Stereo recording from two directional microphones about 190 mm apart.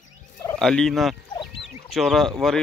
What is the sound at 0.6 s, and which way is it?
Speech, 5° left (ahead or behind).